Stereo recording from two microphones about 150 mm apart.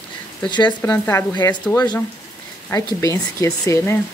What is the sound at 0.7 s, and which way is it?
Speech, 15° left (ahead or behind).